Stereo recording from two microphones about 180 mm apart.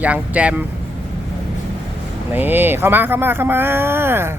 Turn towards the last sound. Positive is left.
turn(degrees=-15)  # may be behind; listen again after turning